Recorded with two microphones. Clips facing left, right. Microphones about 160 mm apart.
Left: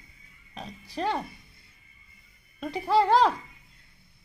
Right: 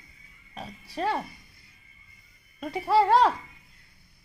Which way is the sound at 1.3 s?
25° left (ahead or behind).